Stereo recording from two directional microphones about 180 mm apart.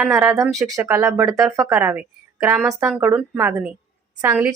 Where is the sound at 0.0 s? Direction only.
10° right (ahead or behind).